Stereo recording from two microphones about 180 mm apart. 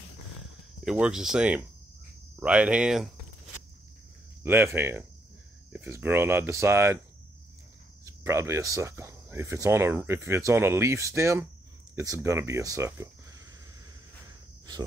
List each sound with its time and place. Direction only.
0.8 s speech: 5° right (ahead or behind)
4.4 s speech: 15° right (ahead or behind)
8.0 s speech: 15° right (ahead or behind)